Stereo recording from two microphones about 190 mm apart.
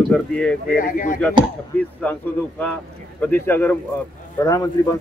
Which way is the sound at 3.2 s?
10° left (ahead or behind).